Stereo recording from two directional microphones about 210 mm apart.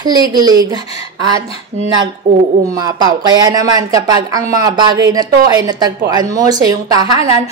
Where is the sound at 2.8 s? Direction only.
20° right (ahead or behind).